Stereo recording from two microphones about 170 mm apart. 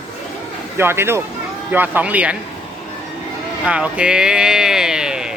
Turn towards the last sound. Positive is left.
turn(degrees=-5)  # may be behind; listen again after turning